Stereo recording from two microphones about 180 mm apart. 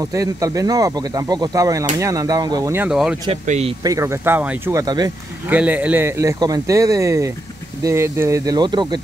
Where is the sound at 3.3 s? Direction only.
35° right (ahead or behind).